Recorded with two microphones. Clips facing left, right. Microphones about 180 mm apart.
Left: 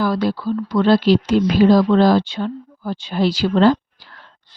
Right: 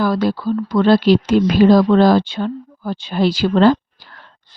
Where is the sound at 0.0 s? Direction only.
50° right (ahead or behind).